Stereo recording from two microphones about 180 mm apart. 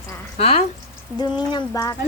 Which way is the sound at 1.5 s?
20° left (ahead or behind).